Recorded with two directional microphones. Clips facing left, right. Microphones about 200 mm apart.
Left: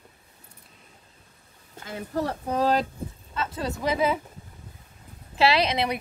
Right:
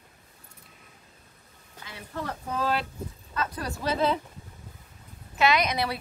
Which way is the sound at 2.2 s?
35° left (ahead or behind).